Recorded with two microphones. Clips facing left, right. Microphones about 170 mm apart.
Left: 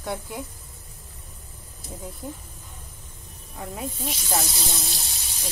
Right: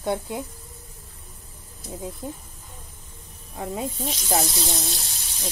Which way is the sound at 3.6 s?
25° right (ahead or behind).